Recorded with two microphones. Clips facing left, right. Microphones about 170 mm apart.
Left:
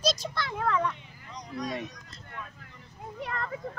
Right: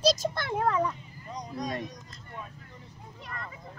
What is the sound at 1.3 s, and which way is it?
Speech, 45° right (ahead or behind).